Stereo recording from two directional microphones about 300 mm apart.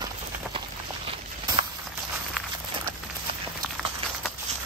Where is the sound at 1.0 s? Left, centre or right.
Centre.